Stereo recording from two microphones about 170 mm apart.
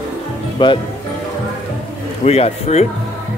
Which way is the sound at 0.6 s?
30° left (ahead or behind).